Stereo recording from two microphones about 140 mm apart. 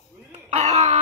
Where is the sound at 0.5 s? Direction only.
55° right (ahead or behind).